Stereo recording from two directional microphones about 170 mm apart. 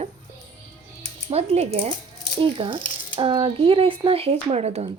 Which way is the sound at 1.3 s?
40° right (ahead or behind).